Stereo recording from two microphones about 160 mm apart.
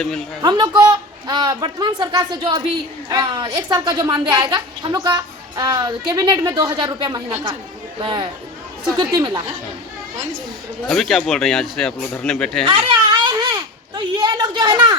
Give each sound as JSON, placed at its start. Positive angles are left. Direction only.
{"t": 0.4, "sound": "a woman's voice", "side_deg": -30}
{"t": 10.8, "sound": "speech", "side_deg": 0}
{"t": 12.7, "sound": "a sound", "side_deg": -30}